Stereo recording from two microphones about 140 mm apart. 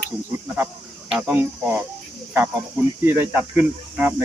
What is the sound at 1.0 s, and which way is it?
Speech, 5° right (ahead or behind).